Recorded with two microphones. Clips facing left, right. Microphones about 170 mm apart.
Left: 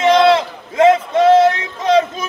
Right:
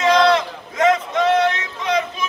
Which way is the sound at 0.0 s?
25° left (ahead or behind).